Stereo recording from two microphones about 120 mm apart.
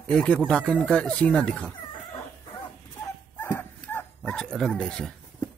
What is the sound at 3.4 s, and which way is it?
Bow-wow, 15° left (ahead or behind).